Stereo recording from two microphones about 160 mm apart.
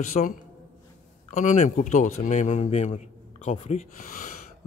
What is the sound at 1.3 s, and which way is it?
A man's voice, 50° left (ahead or behind).